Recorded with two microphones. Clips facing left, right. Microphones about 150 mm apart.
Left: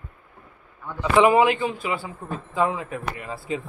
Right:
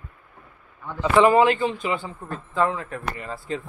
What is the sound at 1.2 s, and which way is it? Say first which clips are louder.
A man's voice: right 1 dB; 10° left (ahead or behind).